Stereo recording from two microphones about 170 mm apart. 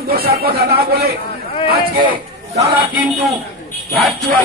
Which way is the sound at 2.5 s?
35° right (ahead or behind).